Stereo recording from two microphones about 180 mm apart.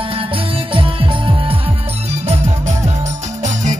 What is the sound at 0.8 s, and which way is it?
Music, 30° right (ahead or behind).